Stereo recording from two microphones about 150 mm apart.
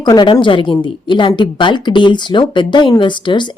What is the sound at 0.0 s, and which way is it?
A woman's voice, 30° left (ahead or behind).